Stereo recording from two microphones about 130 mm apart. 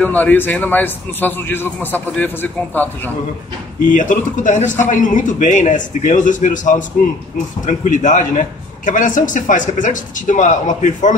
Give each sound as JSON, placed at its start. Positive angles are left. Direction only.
{"t": 0.0, "sound": "a man's voice", "side_deg": 15}
{"t": 3.9, "sound": "a man's voice", "side_deg": 85}